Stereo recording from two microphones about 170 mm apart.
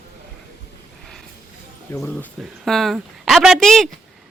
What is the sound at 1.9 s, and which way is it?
Speech, 15° left (ahead or behind).